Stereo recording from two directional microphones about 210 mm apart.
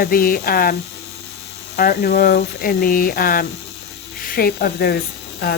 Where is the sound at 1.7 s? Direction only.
45° left (ahead or behind).